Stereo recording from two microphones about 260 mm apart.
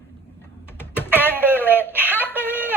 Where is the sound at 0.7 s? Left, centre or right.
Centre.